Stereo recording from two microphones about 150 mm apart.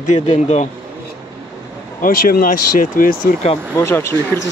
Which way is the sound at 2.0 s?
70° left (ahead or behind).